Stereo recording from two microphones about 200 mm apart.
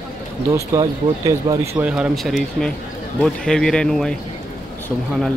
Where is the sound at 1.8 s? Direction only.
5° right (ahead or behind).